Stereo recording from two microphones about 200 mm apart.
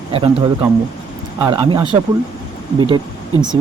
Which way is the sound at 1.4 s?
25° right (ahead or behind).